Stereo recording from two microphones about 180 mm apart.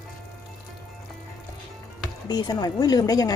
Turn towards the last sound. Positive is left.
turn(degrees=20)  # may be behind; listen again after turning